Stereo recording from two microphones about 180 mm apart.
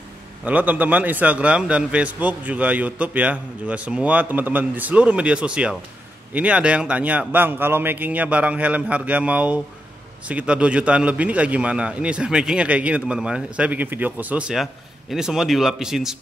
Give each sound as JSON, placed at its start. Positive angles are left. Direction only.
{"t": 0.5, "sound": "a man's voice", "side_deg": -10}